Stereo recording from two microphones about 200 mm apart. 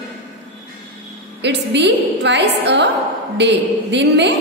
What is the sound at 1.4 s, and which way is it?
A woman's voice, 60° right (ahead or behind).